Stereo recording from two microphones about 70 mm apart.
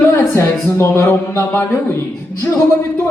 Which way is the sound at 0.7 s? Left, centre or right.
Left.